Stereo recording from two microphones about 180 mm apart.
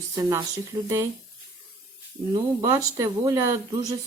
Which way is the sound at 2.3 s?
20° right (ahead or behind).